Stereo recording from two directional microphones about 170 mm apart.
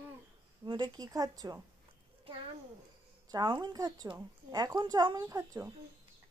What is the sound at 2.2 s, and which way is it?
A child's voice, 30° right (ahead or behind).